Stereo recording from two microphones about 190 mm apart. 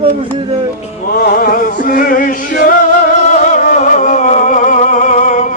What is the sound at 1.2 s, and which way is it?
Music, 50° left (ahead or behind).